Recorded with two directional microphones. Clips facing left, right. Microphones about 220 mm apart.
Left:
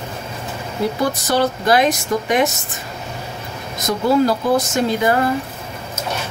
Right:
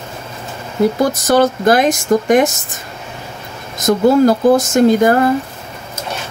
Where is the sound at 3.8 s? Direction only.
45° right (ahead or behind).